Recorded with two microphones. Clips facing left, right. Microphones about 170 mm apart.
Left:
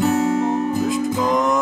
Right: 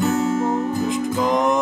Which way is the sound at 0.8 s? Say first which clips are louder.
Left 1 dB; 20° right (ahead or behind).